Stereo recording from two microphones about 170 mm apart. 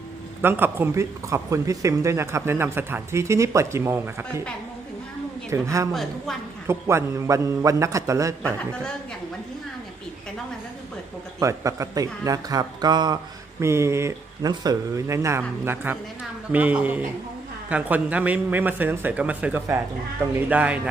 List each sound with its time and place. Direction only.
0.4 s speech: 10° right (ahead or behind)
5.5 s a man's voice: 20° right (ahead or behind)
5.9 s a woman's voice: centre (ahead or behind)
6.7 s speech: 15° right (ahead or behind)
11.3 s a man's voice: 20° right (ahead or behind)